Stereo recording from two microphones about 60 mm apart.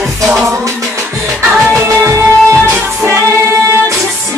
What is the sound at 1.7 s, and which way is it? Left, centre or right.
Music, right.